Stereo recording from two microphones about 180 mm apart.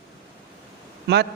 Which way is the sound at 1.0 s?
70° right (ahead or behind).